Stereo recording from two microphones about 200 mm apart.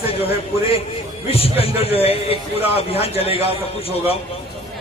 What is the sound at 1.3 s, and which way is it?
A man's voice, 30° left (ahead or behind).